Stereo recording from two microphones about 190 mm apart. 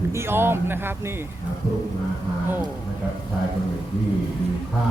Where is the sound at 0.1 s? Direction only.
15° right (ahead or behind).